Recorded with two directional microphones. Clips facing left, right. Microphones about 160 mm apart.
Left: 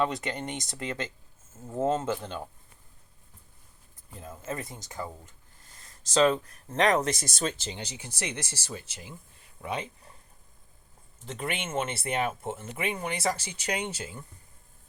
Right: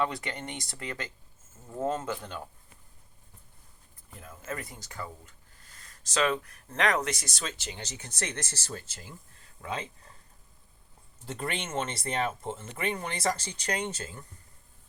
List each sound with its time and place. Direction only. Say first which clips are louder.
0.0 s speech: left 3 dB; 20° left (ahead or behind)
4.1 s speech: left 2 dB; 25° left (ahead or behind)
6.1 s speech: left 5 dB; 30° left (ahead or behind)
7.3 s speech: left 7 dB; 45° left (ahead or behind)
7.8 s speech: left 1 dB; 10° left (ahead or behind)
11.3 s speech: left 2 dB; 5° left (ahead or behind)